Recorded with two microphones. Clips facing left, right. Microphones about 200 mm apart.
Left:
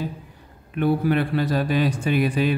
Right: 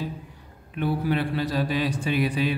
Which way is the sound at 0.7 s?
55° left (ahead or behind).